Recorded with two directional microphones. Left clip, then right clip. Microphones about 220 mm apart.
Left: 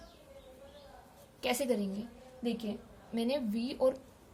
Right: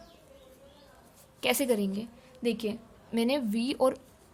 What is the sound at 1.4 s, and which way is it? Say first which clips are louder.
A woman's voice: right 5 dB; 30° right (ahead or behind).